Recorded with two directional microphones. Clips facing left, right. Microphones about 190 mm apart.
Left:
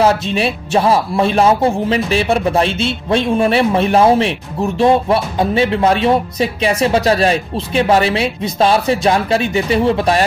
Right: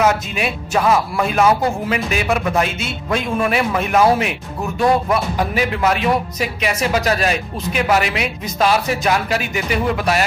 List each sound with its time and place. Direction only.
0.0 s speech: 30° left (ahead or behind)